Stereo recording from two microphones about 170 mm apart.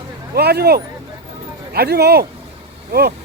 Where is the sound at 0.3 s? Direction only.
70° right (ahead or behind).